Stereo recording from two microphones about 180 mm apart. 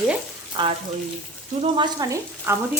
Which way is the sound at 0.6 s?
25° right (ahead or behind).